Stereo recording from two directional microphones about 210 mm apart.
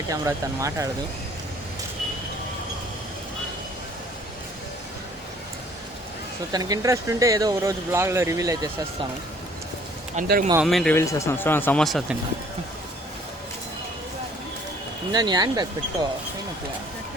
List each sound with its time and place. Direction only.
0.1 s speech: 15° right (ahead or behind)
6.5 s speech: 20° right (ahead or behind)
10.2 s speech: 45° right (ahead or behind)
10.6 s speech: centre (ahead or behind)
10.9 s speech: 15° left (ahead or behind)
15.1 s speech: 20° right (ahead or behind)